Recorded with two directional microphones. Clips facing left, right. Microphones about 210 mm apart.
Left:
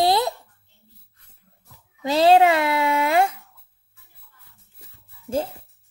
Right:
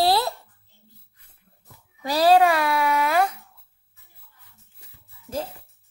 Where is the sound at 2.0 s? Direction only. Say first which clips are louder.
Left 2 dB; 25° left (ahead or behind).